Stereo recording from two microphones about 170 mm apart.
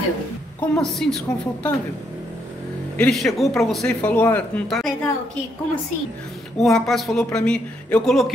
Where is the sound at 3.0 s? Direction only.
Centre (ahead or behind).